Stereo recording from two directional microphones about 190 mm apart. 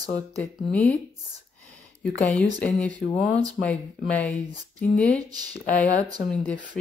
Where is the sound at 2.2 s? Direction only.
5° left (ahead or behind).